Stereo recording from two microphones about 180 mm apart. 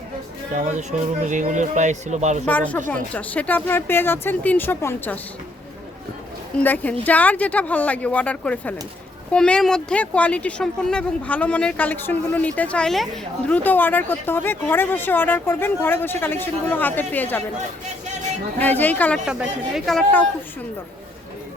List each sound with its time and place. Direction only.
0.5 s speech: 40° right (ahead or behind)
2.5 s speech: 10° left (ahead or behind)
6.6 s speech: 10° left (ahead or behind)
18.6 s speech: 10° left (ahead or behind)
19.2 s a man's voice: 5° right (ahead or behind)